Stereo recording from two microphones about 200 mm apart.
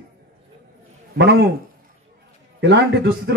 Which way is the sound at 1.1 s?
60° right (ahead or behind).